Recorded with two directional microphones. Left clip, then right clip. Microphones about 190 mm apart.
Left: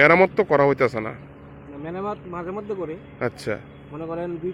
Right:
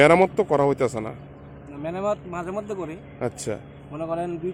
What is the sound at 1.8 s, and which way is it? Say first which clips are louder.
A man's voice: right 4 dB; 20° right (ahead or behind).